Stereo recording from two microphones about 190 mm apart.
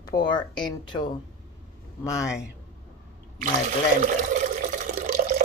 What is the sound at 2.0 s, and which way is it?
Speech, 15° left (ahead or behind).